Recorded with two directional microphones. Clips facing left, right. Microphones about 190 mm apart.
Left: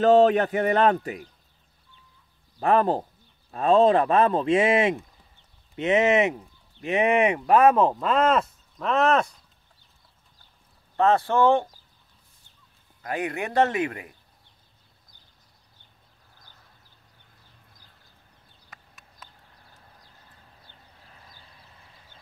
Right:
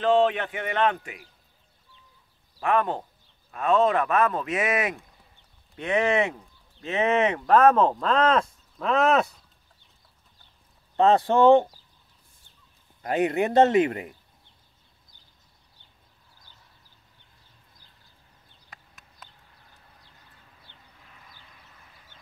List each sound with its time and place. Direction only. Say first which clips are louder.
0.0 s speech: left 4 dB; 40° left (ahead or behind)
2.6 s speech: left 3 dB; 35° left (ahead or behind); by 9.3 s centre (ahead or behind)
11.0 s speech: right 2 dB; 20° right (ahead or behind)
13.0 s speech: right 6 dB; 25° right (ahead or behind)
18.7 s a sound: even; centre (ahead or behind)
20.6 s vehicle: left 1 dB; 35° left (ahead or behind)